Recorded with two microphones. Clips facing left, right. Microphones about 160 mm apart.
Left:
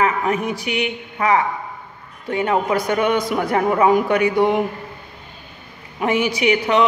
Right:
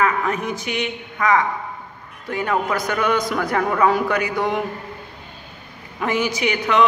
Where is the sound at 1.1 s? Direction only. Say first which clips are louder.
Even; 30° left (ahead or behind).